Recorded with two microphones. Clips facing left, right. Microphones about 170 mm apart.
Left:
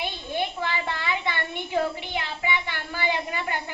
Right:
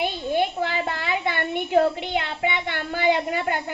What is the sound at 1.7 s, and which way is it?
A woman's voice, 60° right (ahead or behind).